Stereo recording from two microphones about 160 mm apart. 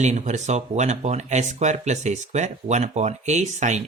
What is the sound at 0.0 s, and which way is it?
Speech, 45° right (ahead or behind).